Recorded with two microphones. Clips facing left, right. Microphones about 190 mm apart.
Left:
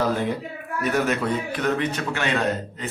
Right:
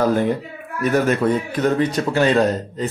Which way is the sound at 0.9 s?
45° right (ahead or behind).